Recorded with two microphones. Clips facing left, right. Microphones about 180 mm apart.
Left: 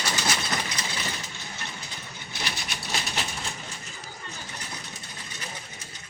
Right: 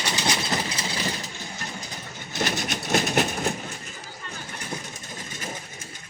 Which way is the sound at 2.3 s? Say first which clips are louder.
Right 9 dB; 45° right (ahead or behind).